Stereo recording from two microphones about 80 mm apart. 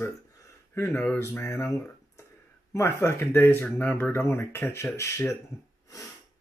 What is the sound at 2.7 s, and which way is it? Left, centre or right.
Speech, left.